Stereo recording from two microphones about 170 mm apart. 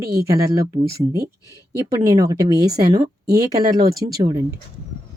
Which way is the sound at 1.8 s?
20° right (ahead or behind).